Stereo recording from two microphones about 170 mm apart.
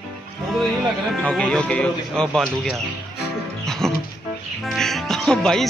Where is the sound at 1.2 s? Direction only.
5° left (ahead or behind).